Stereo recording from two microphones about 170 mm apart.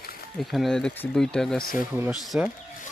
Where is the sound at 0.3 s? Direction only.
Centre (ahead or behind).